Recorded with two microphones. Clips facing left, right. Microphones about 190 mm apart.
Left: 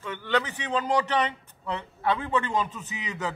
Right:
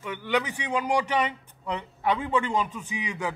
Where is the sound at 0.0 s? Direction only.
15° right (ahead or behind).